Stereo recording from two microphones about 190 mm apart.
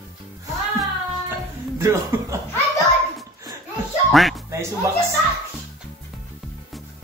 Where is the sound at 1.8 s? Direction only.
15° right (ahead or behind).